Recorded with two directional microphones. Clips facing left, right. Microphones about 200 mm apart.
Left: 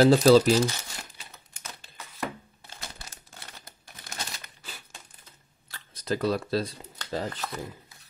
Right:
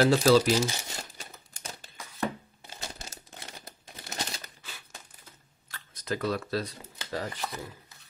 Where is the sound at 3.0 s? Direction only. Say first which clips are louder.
Right 3 dB; 20° right (ahead or behind).